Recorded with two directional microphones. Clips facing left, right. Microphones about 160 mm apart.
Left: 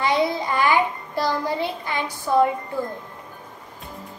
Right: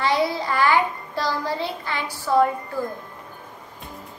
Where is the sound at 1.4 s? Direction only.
15° left (ahead or behind).